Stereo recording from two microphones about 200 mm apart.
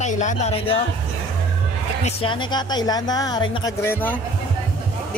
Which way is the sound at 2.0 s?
30° left (ahead or behind).